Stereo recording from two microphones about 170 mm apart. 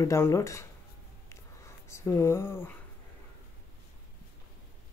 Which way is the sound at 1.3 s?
15° left (ahead or behind).